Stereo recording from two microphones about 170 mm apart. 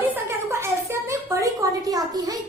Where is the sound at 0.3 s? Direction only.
15° right (ahead or behind).